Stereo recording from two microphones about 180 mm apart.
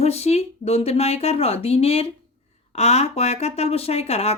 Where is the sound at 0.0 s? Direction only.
35° left (ahead or behind).